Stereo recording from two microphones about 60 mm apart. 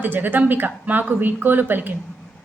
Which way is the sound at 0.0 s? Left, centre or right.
Right.